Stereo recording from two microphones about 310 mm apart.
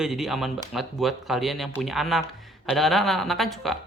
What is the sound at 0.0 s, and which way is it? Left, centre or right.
Speech, centre.